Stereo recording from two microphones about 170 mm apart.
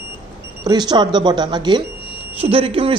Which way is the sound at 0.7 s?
25° right (ahead or behind).